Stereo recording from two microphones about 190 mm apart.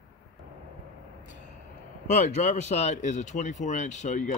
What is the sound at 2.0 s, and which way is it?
Speech, 35° left (ahead or behind).